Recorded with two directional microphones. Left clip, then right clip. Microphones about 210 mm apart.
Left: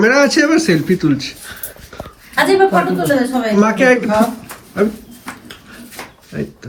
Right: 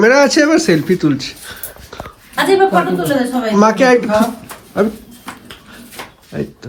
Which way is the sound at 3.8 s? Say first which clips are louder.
Right 1 dB; 10° right (ahead or behind).